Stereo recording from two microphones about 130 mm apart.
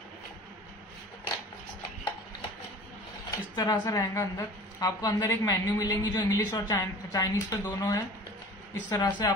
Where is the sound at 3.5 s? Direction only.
30° left (ahead or behind).